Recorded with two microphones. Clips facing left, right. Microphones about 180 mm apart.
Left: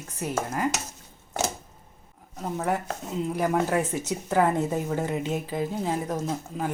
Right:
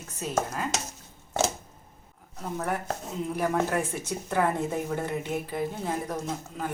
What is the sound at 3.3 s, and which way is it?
A woman's voice, 10° left (ahead or behind).